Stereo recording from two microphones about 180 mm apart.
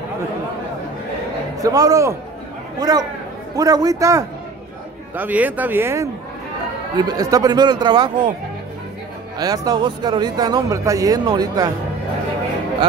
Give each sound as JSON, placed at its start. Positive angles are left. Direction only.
{"t": 1.6, "sound": "speech", "side_deg": -20}
{"t": 9.4, "sound": "speech", "side_deg": -20}